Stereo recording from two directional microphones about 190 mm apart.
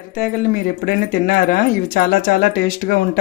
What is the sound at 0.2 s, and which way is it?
Speech, 45° left (ahead or behind).